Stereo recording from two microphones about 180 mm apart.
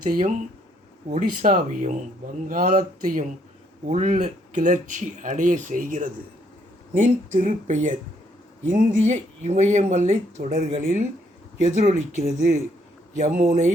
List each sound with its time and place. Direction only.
0.0 s speech: 50° right (ahead or behind)